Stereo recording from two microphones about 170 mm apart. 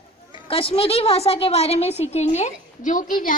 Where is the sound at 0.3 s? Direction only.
35° left (ahead or behind).